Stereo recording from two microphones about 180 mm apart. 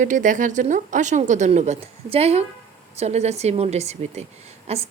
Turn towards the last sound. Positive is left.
turn(degrees=-35)  # may be behind; listen again after turning